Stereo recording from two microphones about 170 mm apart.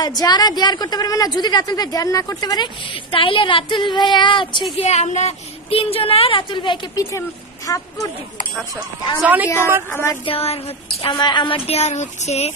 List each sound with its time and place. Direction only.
0.0 s a woman's voice: 25° left (ahead or behind)
4.7 s a woman's voice: 40° left (ahead or behind)
7.0 s speech: 15° left (ahead or behind)
9.2 s a woman's voice: 10° right (ahead or behind)
9.8 s speech: 15° left (ahead or behind)
10.2 s a woman's voice: 35° left (ahead or behind)